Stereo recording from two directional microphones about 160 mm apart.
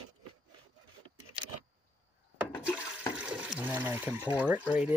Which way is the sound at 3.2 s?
5° right (ahead or behind).